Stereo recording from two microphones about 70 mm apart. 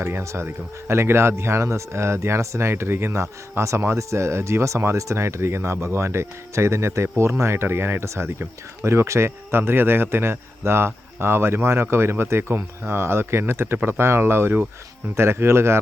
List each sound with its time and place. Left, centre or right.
0.0 s speech: right